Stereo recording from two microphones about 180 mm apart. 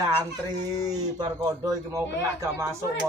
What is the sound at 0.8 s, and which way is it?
Speech, 20° right (ahead or behind).